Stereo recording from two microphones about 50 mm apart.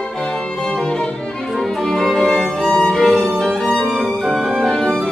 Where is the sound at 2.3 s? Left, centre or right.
Centre.